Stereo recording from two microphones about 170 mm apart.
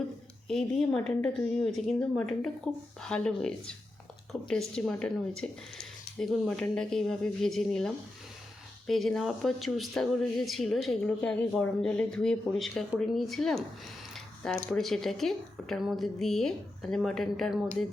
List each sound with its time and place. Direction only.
0.4 s speech: 5° left (ahead or behind)